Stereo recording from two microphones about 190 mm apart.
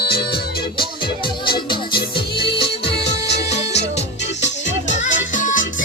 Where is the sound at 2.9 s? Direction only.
60° left (ahead or behind).